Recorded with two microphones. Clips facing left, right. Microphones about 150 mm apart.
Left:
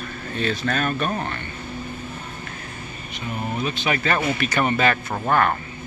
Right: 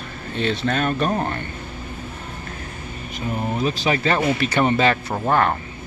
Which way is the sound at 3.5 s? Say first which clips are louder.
Right 3 dB; 35° right (ahead or behind).